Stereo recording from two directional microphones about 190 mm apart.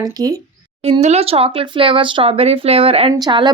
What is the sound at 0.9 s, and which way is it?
Speech, 35° right (ahead or behind).